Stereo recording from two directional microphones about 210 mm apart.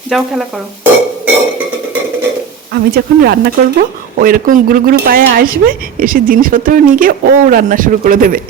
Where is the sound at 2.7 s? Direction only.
50° right (ahead or behind).